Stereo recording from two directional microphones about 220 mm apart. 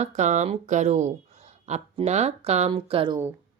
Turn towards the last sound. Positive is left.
turn(degrees=-20)  # may be behind; listen again after turning